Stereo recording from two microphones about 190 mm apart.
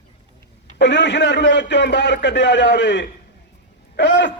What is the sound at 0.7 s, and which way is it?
A man's voice, 70° left (ahead or behind).